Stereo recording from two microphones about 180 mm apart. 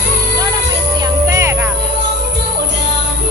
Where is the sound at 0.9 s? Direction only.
20° right (ahead or behind).